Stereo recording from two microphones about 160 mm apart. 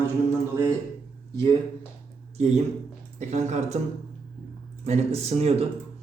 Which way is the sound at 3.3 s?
45° right (ahead or behind).